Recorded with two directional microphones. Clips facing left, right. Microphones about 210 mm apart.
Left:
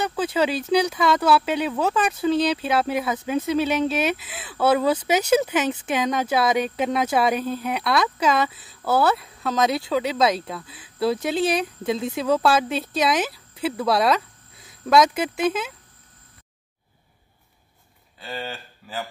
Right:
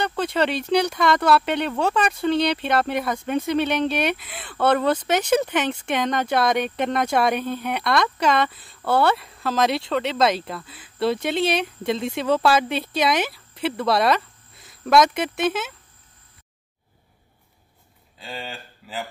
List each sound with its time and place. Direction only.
0.0 s speech: 5° left (ahead or behind)
14.6 s cricket: 5° left (ahead or behind)
15.4 s speech: 5° right (ahead or behind)